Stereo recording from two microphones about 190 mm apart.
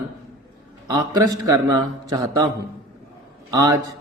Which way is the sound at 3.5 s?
15° right (ahead or behind).